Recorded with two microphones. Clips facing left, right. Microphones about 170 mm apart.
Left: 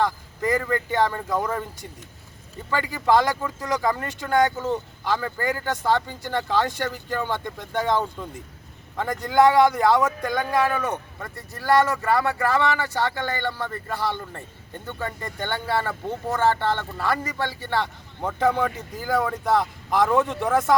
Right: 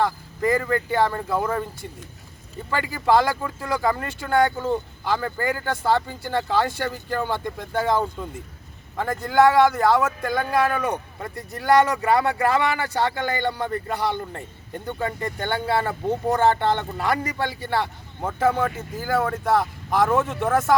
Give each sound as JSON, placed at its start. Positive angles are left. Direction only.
{"t": 0.0, "sound": "speech", "side_deg": -5}
{"t": 2.6, "sound": "speech", "side_deg": -10}